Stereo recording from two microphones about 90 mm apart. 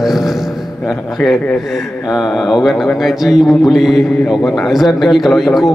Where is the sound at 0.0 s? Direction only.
5° right (ahead or behind).